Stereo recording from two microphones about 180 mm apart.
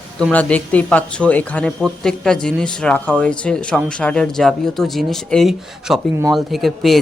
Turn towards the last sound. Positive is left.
turn(degrees=0)  # may be behind; listen again after turning